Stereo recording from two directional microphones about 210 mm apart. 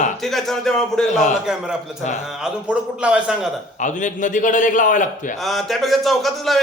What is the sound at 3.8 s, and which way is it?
Speech, 35° left (ahead or behind).